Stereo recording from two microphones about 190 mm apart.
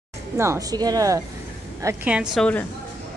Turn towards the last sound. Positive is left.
turn(degrees=5)  # may be behind; listen again after turning